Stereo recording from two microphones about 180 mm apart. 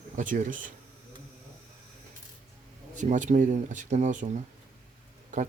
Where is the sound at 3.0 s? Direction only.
45° right (ahead or behind).